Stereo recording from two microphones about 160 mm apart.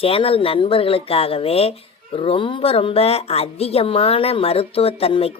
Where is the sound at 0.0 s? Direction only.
35° left (ahead or behind).